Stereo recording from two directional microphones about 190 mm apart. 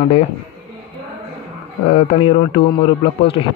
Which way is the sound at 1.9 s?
30° left (ahead or behind).